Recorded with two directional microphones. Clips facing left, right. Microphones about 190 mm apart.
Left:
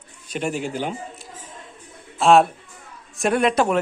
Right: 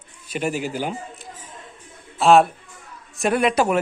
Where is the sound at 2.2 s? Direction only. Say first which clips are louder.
Even; centre (ahead or behind).